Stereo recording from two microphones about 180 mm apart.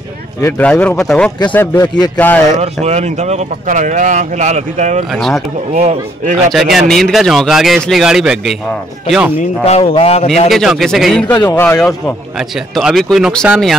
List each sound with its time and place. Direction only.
0.4 s a man's voice: 10° left (ahead or behind)
2.6 s speech: 35° right (ahead or behind)
5.1 s speech: centre (ahead or behind)
5.7 s speech: 40° right (ahead or behind)
6.5 s speech: centre (ahead or behind)
9.7 s a man's voice: 35° left (ahead or behind)
10.5 s speech: centre (ahead or behind)
11.3 s a man's voice: 15° left (ahead or behind)
12.4 s speech: 5° right (ahead or behind)